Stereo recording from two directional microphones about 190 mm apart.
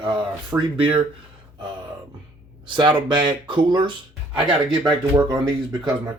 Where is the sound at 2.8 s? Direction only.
25° right (ahead or behind).